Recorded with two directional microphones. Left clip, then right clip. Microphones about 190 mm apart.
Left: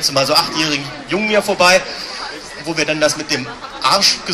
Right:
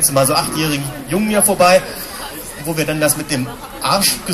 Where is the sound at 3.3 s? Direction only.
20° right (ahead or behind).